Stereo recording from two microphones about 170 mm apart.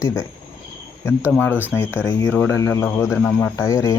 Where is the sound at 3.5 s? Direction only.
20° left (ahead or behind).